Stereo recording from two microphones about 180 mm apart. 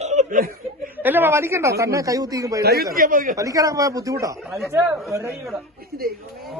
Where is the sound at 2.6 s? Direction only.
60° right (ahead or behind).